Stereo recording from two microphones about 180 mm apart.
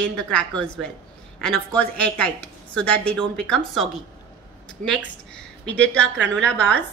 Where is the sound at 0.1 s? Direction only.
5° left (ahead or behind).